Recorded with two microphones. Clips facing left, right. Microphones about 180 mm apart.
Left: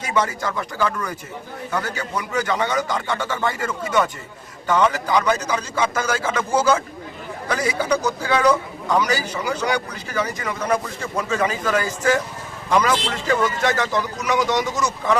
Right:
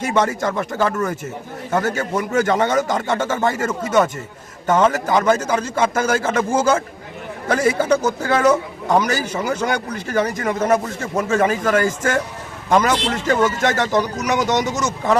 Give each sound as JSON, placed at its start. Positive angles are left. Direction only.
{"t": 0.2, "sound": "a man's voice", "side_deg": -45}